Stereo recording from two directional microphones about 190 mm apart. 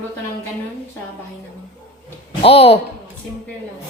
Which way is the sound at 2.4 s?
30° left (ahead or behind).